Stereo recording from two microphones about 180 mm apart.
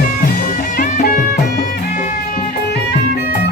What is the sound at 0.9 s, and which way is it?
Music, 50° left (ahead or behind).